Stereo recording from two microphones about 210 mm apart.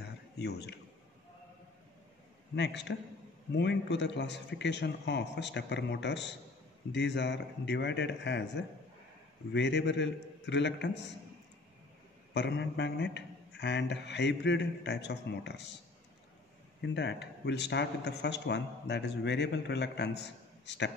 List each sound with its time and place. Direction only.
0.4 s speech: 50° left (ahead or behind)
2.5 s speech: 55° left (ahead or behind)
12.4 s speech: 55° left (ahead or behind)
16.8 s speech: 55° left (ahead or behind)